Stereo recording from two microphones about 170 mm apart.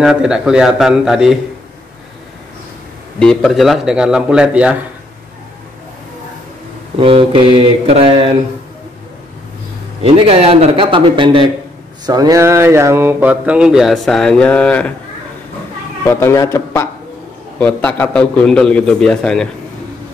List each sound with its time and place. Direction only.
0.0 s a man's voice: 5° right (ahead or behind)
3.2 s a man's voice: 5° left (ahead or behind)
7.0 s a man's voice: 30° right (ahead or behind)
10.0 s a man's voice: 35° right (ahead or behind); by 14.9 s 5° left (ahead or behind)
16.1 s a man's voice: 15° left (ahead or behind)